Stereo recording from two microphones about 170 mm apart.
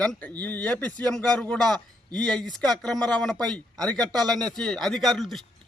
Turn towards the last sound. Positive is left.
turn(degrees=0)  # may be behind; listen again after turning